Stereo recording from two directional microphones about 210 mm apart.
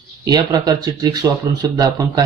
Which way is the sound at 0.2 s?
20° right (ahead or behind).